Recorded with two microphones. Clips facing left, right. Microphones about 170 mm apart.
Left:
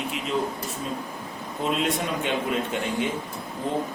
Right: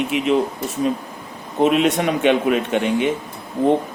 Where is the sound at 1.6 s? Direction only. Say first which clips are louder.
Right 10 dB; 75° right (ahead or behind).